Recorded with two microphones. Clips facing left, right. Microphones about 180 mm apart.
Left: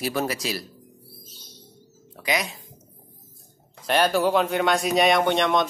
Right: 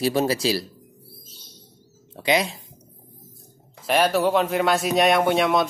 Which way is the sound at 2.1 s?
30° right (ahead or behind).